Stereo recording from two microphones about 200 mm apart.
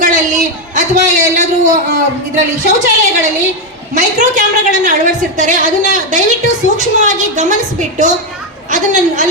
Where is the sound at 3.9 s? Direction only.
40° right (ahead or behind).